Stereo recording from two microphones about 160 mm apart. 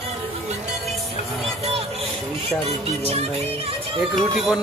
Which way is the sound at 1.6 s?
40° right (ahead or behind).